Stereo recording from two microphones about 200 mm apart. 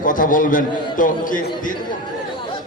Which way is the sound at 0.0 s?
45° left (ahead or behind).